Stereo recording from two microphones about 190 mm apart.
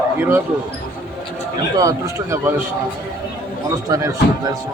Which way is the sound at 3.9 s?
15° right (ahead or behind).